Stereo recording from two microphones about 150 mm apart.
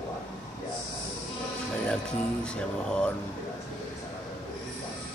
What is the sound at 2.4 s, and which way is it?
Music, 5° left (ahead or behind).